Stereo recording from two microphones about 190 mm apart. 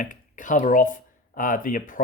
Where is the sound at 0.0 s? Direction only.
45° left (ahead or behind).